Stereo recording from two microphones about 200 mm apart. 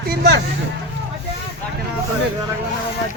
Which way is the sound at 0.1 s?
55° right (ahead or behind).